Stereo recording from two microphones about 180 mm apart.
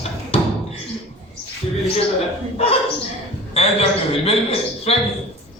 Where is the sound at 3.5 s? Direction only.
35° left (ahead or behind).